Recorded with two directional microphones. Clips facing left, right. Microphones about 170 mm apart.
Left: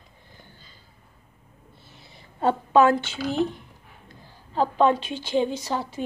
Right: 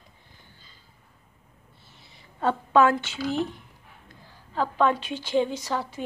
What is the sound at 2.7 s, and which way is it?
Speech, 25° left (ahead or behind).